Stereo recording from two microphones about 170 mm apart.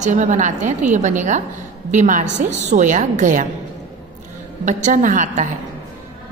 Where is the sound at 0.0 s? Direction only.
45° right (ahead or behind).